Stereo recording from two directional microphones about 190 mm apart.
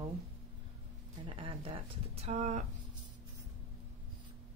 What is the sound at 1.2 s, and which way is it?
Speech, 30° right (ahead or behind).